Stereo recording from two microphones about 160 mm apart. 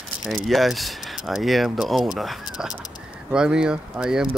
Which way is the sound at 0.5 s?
Centre (ahead or behind).